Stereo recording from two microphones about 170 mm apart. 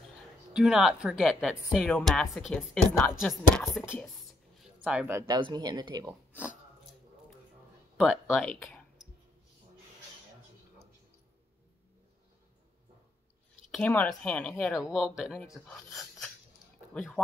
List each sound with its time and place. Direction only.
0.5 s speech: 5° right (ahead or behind)
4.6 s speech: 5° right (ahead or behind); by 6.1 s 25° right (ahead or behind)
8.0 s speech: centre (ahead or behind)
13.7 s speech: 10° left (ahead or behind)